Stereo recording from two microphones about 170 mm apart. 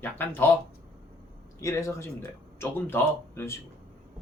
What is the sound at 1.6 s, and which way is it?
Speech, 15° left (ahead or behind).